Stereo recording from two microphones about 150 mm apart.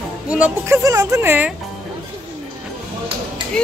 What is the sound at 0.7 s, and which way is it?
Speech, 20° right (ahead or behind).